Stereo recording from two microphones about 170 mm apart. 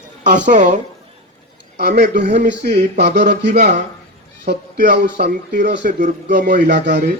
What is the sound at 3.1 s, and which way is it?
Speech, 90° right.